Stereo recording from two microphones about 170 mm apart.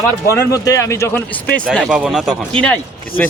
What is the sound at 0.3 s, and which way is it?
Speech, 20° left (ahead or behind).